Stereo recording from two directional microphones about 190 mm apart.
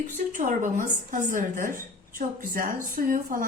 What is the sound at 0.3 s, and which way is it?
A woman's voice, 45° right (ahead or behind).